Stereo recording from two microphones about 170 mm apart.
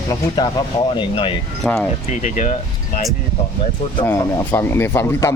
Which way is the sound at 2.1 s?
45° left (ahead or behind).